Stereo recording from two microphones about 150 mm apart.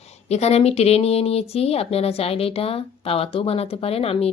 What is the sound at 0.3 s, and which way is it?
Speech, 45° left (ahead or behind).